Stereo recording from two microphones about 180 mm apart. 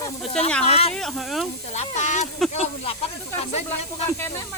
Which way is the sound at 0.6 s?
35° left (ahead or behind).